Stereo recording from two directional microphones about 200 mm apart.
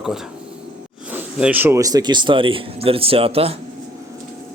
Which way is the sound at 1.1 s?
10° right (ahead or behind).